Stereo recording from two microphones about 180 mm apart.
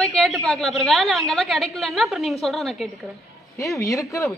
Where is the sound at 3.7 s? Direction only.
15° left (ahead or behind).